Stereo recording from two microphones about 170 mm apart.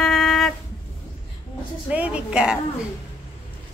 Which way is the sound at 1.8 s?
5° right (ahead or behind).